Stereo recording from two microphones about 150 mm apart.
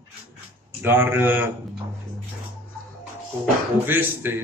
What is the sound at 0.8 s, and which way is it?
Speech, 15° right (ahead or behind).